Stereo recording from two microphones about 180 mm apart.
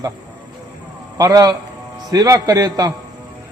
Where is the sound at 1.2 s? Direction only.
20° right (ahead or behind).